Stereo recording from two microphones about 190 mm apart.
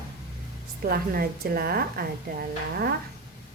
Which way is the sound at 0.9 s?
50° right (ahead or behind).